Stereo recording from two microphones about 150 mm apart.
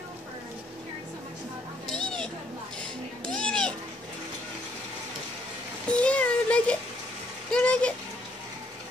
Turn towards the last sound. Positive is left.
turn(degrees=10)  # may be behind; listen again after turning